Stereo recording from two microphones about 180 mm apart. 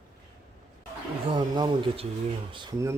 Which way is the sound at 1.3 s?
30° right (ahead or behind).